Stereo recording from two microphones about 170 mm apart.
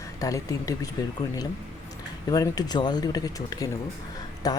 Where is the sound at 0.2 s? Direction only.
20° left (ahead or behind).